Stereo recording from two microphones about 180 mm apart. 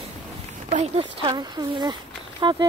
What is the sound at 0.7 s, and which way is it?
Speech, 35° right (ahead or behind).